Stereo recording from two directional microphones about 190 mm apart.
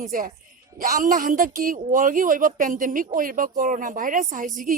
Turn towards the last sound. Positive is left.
turn(degrees=-45)  # may be behind; listen again after turning